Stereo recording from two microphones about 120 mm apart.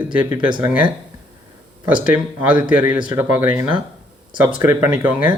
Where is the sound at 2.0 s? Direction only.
10° right (ahead or behind).